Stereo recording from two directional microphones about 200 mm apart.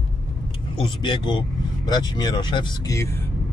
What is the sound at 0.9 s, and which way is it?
Speech, 25° left (ahead or behind).